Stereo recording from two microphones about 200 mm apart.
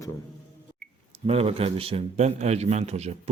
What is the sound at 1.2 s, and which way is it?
A man's voice, 30° right (ahead or behind).